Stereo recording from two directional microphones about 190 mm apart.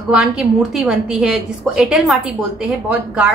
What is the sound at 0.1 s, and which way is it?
A woman's voice, 5° right (ahead or behind).